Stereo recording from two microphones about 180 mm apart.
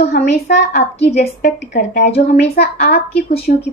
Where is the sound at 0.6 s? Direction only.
70° left (ahead or behind).